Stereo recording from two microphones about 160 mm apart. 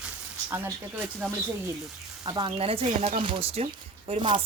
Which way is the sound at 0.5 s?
10° right (ahead or behind).